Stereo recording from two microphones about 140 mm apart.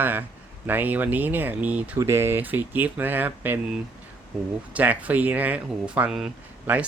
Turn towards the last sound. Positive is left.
turn(degrees=-10)  # may be behind; listen again after turning